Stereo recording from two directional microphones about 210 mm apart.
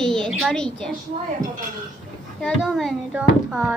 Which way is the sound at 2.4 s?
Centre (ahead or behind).